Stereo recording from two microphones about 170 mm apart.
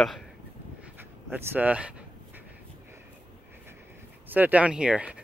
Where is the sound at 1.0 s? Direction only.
15° right (ahead or behind).